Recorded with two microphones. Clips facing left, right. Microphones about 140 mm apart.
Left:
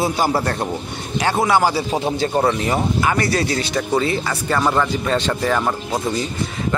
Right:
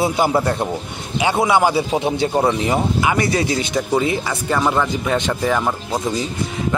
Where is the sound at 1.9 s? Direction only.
10° right (ahead or behind).